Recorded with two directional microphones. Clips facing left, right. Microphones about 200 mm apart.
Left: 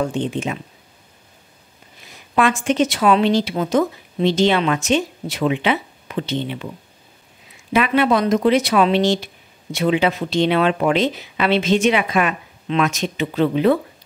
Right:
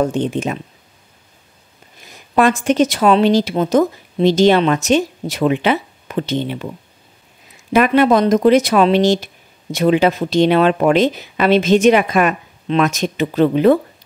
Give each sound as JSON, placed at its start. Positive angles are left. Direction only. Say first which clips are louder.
{"t": 0.0, "sound": "speech", "louder": "right 4 dB", "side_deg": -40}
{"t": 2.3, "sound": "a woman's voice", "louder": "right 4 dB", "side_deg": -40}
{"t": 7.7, "sound": "speech", "louder": "right 4 dB", "side_deg": -45}